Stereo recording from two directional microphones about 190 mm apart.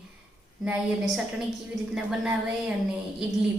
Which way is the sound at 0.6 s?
5° right (ahead or behind).